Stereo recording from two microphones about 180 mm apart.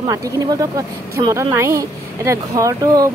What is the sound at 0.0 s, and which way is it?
A woman's voice, 20° right (ahead or behind).